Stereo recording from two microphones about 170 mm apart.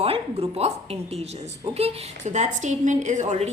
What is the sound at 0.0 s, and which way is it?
Speech, 35° right (ahead or behind).